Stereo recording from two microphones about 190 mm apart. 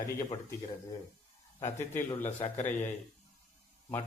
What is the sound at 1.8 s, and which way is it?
A man's voice, 10° left (ahead or behind).